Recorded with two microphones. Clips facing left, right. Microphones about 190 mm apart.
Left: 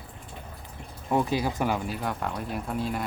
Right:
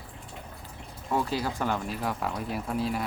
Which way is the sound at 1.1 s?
20° left (ahead or behind).